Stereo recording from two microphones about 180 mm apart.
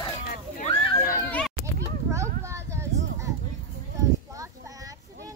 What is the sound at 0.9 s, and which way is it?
Children playing, 15° left (ahead or behind).